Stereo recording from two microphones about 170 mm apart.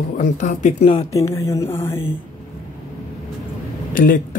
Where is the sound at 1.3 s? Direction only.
15° left (ahead or behind).